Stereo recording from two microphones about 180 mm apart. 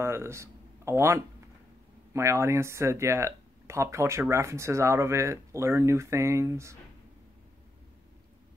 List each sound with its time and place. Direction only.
0.0 s speech: 15° right (ahead or behind)